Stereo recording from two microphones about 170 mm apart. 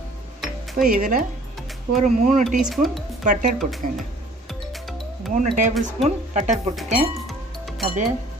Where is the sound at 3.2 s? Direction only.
50° right (ahead or behind).